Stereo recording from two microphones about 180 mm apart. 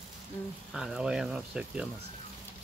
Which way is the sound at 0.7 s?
Centre (ahead or behind).